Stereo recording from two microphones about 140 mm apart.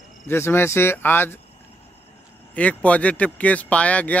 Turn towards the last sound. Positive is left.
turn(degrees=10)  # may be behind; listen again after turning